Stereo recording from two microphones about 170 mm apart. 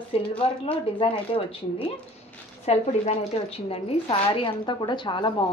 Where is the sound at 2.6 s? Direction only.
35° left (ahead or behind).